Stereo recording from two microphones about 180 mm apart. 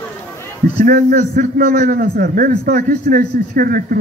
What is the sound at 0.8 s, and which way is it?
A man's voice, 55° right (ahead or behind).